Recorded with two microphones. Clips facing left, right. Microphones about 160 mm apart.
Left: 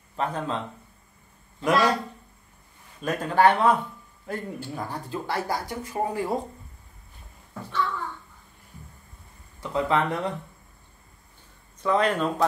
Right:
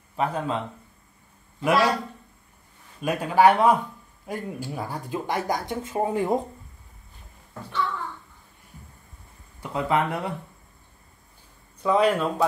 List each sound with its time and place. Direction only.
0.1 s a man's voice: 10° right (ahead or behind)
1.6 s speech: 5° right (ahead or behind)
3.0 s speech: 10° right (ahead or behind)
9.6 s speech: 10° right (ahead or behind)
11.8 s speech: 10° right (ahead or behind)